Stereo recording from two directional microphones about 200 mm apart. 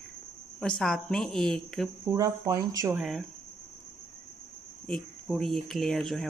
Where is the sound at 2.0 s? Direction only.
15° right (ahead or behind).